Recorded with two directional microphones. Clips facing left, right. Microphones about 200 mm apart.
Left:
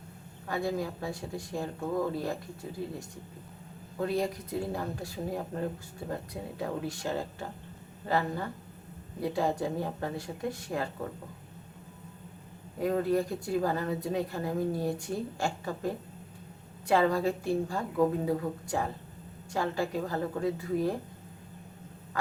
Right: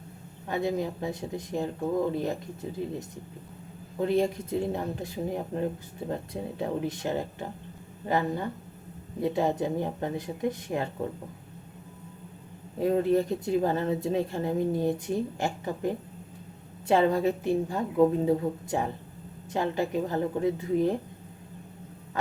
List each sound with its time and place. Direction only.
0.4 s speech: 20° right (ahead or behind)
12.8 s speech: 25° right (ahead or behind)